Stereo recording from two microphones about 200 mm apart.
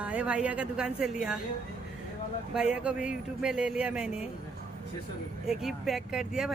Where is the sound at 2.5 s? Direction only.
5° right (ahead or behind).